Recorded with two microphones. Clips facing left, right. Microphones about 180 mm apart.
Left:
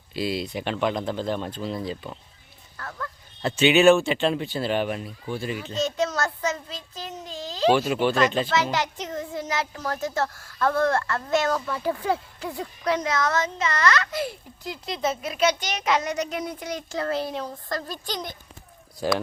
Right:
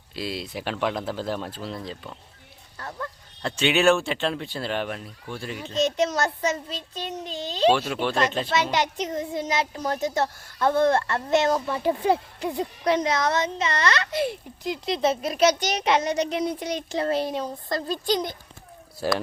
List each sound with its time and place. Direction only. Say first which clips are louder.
0.1 s speech: left 4 dB; centre (ahead or behind)
2.7 s a child's voice: right 1 dB; 25° right (ahead or behind)
3.4 s speech: left 4 dB; 5° left (ahead or behind)
5.8 s a child's voice: right 3 dB; 20° right (ahead or behind)
7.3 s a child's voice: right 2 dB; 25° right (ahead or behind)
7.7 s speech: left 5 dB; centre (ahead or behind)
8.7 s a child's voice: right 2 dB; 15° right (ahead or behind)
15.0 s a child's voice: right 3 dB; 35° right (ahead or behind); by 18.3 s 15° right (ahead or behind)